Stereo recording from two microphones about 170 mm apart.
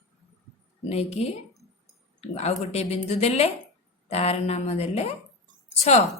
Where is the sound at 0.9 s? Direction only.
40° left (ahead or behind).